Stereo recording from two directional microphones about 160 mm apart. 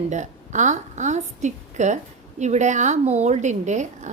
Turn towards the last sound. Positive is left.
turn(degrees=-50)  # may be behind; listen again after turning